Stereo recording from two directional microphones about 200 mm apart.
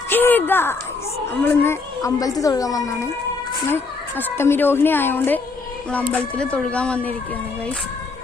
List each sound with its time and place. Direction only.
0.1 s a sound: 10° left (ahead or behind)
1.4 s a woman's voice: 10° left (ahead or behind)
4.2 s a woman's voice: 10° left (ahead or behind)